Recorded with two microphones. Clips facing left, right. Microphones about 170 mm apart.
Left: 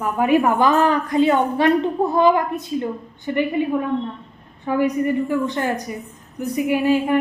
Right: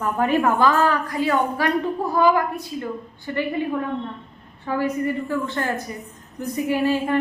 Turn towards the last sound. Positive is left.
turn(degrees=15)  # may be behind; listen again after turning